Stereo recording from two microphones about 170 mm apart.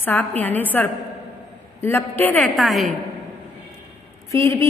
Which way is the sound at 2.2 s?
10° left (ahead or behind).